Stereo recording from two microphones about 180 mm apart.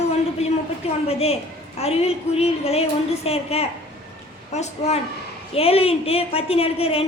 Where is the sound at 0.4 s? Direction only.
35° left (ahead or behind).